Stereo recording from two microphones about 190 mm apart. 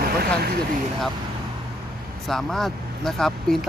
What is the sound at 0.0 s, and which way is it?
Speech, 55° right (ahead or behind).